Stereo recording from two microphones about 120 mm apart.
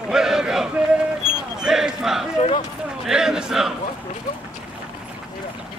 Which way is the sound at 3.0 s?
5° right (ahead or behind).